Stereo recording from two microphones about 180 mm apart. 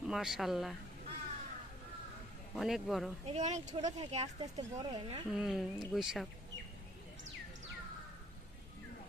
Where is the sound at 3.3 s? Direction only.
40° right (ahead or behind).